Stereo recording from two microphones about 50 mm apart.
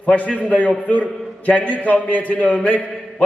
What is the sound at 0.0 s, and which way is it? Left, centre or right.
A man's voice, left.